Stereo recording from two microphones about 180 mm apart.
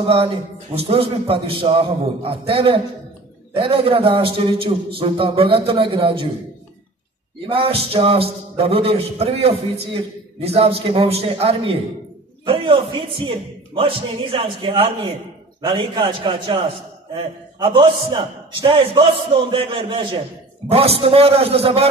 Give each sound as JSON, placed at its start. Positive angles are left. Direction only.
{"t": 0.0, "sound": "a man's voice", "side_deg": -30}
{"t": 7.4, "sound": "a man's voice", "side_deg": -30}